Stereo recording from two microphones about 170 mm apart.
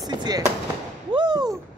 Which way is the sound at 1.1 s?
25° right (ahead or behind).